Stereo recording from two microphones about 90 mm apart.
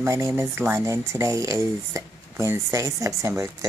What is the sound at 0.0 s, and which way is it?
Speech, 35° right (ahead or behind).